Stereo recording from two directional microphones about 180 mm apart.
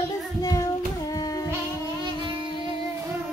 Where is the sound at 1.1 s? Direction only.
20° left (ahead or behind).